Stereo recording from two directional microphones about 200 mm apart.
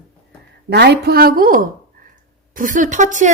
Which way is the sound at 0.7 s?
55° right (ahead or behind).